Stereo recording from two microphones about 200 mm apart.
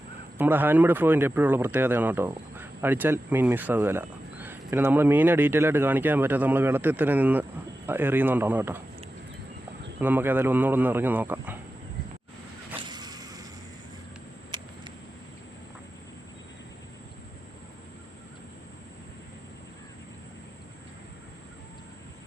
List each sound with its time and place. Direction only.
0.3 s speech: 10° right (ahead or behind)
10.0 s speech: 10° right (ahead or behind)
12.9 s a sound: 20° right (ahead or behind)